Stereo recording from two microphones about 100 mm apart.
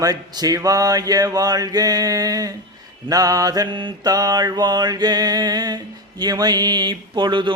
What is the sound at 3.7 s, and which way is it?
Mantra, 55° right (ahead or behind).